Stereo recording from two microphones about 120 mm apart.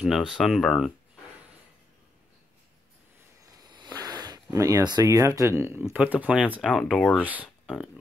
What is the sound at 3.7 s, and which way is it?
Speech, 35° right (ahead or behind).